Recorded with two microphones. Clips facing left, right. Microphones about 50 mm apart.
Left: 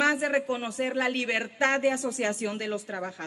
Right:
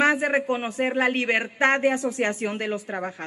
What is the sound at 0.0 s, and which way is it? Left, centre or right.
A man's voice, right.